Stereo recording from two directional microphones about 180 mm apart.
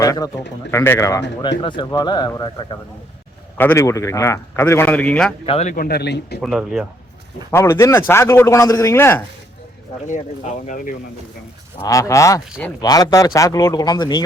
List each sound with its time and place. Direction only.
0.0 s a man's voice: 20° left (ahead or behind)
3.6 s a man's voice: 15° left (ahead or behind)
5.5 s speech: 35° left (ahead or behind)
5.7 s speech: 60° left (ahead or behind)
6.4 s speech: centre (ahead or behind)
7.5 s a man's voice: 15° left (ahead or behind)
10.1 s speech: 45° left (ahead or behind)
11.8 s a man's voice: 20° left (ahead or behind)